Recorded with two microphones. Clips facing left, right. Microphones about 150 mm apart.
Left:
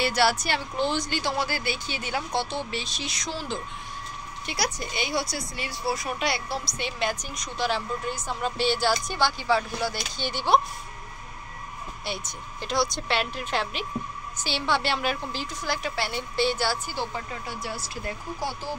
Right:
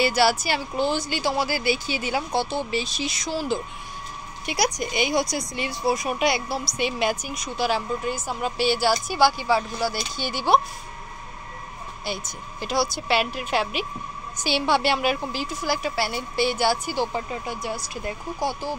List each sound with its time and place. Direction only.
0.0 s a woman's voice: 5° right (ahead or behind)
12.0 s a woman's voice: centre (ahead or behind)